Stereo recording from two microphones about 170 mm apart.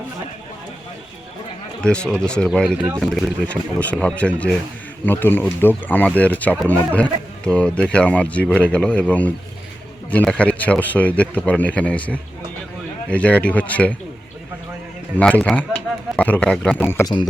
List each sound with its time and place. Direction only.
1.8 s speech: 5° left (ahead or behind)
15.2 s speech: 5° left (ahead or behind)